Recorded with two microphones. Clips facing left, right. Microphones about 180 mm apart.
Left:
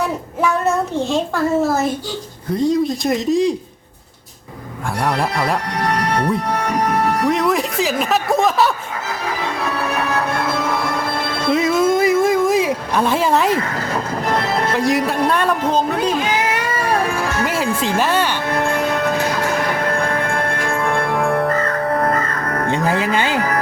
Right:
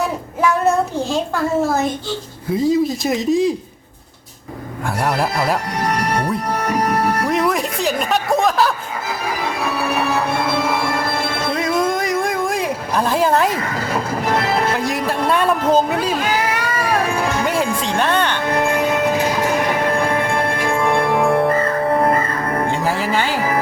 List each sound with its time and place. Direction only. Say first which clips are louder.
0.0 s a child's voice: right 1 dB; centre (ahead or behind)
5.0 s speech: even; 5° right (ahead or behind)
9.4 s music: right 1 dB; 10° right (ahead or behind)
11.5 s a sound: left 5 dB; 5° left (ahead or behind)
13.7 s speech: right 1 dB; 10° right (ahead or behind)
17.2 s music: right 2 dB; 20° right (ahead or behind)
17.4 s speech: even; 5° left (ahead or behind)
18.4 s music: right 1 dB; 15° right (ahead or behind)
22.7 s music: left 1 dB; 20° left (ahead or behind)